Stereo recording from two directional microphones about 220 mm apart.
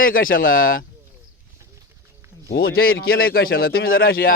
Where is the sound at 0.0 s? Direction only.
40° left (ahead or behind).